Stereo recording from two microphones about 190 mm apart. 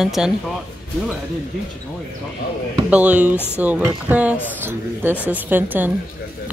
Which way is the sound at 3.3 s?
10° left (ahead or behind).